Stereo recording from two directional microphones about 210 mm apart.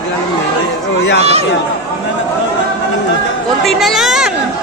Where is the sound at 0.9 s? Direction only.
60° left (ahead or behind).